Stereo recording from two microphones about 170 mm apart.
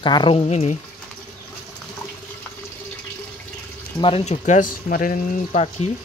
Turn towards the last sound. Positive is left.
turn(degrees=50)  # may be behind; listen again after turning